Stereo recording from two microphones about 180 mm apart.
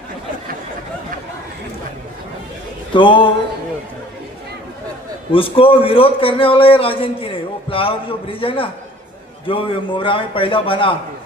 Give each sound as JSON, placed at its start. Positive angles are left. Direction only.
{"t": 2.9, "sound": "a man's voice", "side_deg": 25}
{"t": 5.3, "sound": "a man's voice", "side_deg": 30}